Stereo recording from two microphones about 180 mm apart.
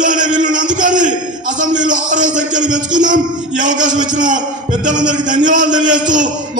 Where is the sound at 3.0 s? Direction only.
45° right (ahead or behind).